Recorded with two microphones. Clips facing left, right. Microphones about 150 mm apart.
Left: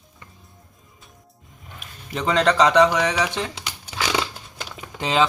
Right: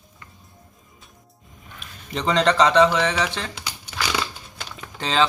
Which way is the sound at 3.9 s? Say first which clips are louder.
Left 2 dB; 20° left (ahead or behind).